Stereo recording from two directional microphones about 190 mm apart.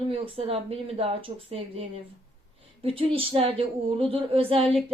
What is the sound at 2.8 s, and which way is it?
A woman's voice, 30° right (ahead or behind).